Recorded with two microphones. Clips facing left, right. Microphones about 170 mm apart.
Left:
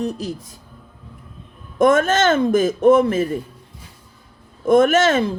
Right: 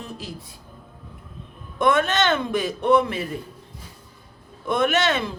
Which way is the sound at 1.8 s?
45° left (ahead or behind).